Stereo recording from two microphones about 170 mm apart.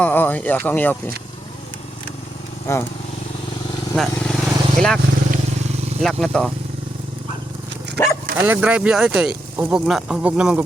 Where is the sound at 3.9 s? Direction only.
5° left (ahead or behind).